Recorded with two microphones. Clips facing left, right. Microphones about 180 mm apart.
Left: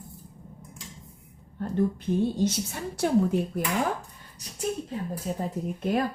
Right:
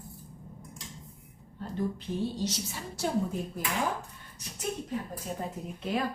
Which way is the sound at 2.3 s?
50° left (ahead or behind).